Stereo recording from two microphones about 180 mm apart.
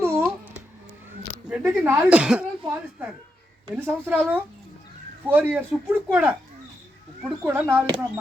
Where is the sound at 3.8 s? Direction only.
10° right (ahead or behind).